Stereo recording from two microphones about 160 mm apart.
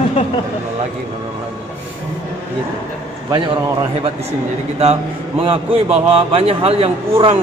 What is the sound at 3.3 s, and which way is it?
A man's voice, 30° right (ahead or behind).